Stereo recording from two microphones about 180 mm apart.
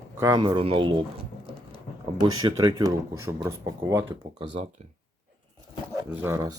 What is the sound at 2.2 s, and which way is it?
Speech, 20° right (ahead or behind).